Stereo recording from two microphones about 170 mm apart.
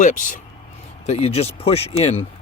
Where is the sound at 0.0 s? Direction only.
50° left (ahead or behind).